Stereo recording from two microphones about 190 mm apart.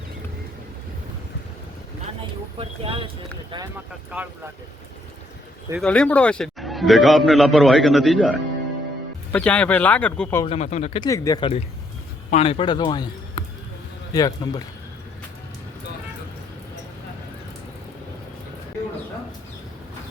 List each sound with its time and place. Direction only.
2.6 s speech: 30° right (ahead or behind)
5.8 s a man's voice: 5° left (ahead or behind)
10.4 s speech: 35° left (ahead or behind)
11.0 s speech: 15° left (ahead or behind)